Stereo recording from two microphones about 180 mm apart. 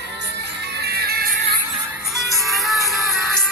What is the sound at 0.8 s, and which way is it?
Music, 60° right (ahead or behind).